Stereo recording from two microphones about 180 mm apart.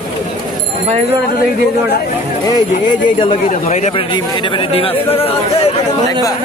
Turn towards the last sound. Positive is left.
turn(degrees=30)  # may be behind; listen again after turning